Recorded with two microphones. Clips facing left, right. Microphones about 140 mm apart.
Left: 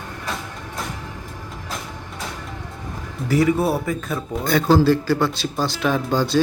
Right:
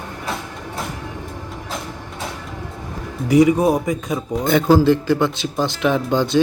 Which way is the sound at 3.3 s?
15° right (ahead or behind).